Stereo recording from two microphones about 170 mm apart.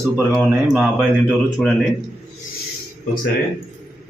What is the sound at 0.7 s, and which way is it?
Speech, 5° right (ahead or behind).